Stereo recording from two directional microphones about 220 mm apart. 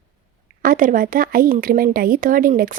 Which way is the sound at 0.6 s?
40° right (ahead or behind).